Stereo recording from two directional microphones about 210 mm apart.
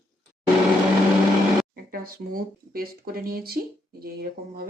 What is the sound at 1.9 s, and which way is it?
A woman's voice, 45° right (ahead or behind).